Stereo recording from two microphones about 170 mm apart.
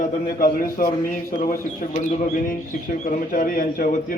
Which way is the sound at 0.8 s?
50° left (ahead or behind).